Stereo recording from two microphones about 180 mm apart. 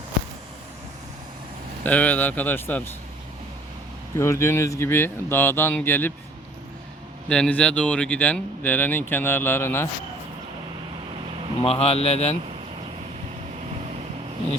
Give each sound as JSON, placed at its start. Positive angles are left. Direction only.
{"t": 1.8, "sound": "speech", "side_deg": 10}
{"t": 4.2, "sound": "speech", "side_deg": 15}
{"t": 7.3, "sound": "speech", "side_deg": 5}
{"t": 11.6, "sound": "speech", "side_deg": 35}